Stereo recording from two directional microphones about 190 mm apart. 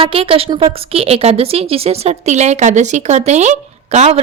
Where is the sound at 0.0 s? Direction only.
30° right (ahead or behind).